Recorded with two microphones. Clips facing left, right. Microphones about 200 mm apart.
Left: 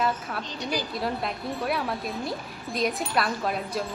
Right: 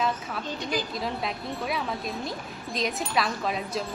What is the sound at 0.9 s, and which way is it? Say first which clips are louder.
A woman's voice: left 1 dB; centre (ahead or behind).